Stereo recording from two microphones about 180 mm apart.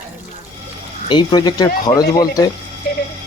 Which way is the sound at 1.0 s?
25° left (ahead or behind).